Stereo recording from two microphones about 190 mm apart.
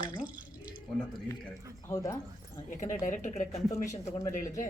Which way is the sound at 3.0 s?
40° left (ahead or behind).